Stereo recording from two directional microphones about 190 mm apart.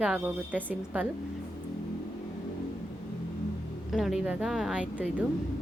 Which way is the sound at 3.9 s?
Centre (ahead or behind).